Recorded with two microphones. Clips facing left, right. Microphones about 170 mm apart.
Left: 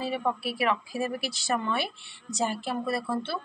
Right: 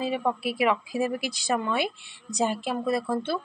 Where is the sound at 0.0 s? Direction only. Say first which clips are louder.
Right 2 dB; 20° right (ahead or behind).